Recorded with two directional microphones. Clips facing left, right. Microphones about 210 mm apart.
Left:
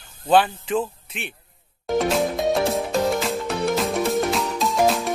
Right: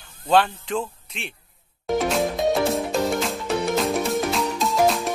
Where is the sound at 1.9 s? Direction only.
Centre (ahead or behind).